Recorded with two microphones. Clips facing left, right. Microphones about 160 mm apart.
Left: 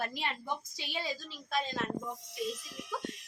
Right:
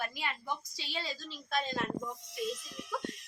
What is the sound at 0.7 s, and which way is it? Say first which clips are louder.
A woman's voice: left 2 dB; 20° left (ahead or behind).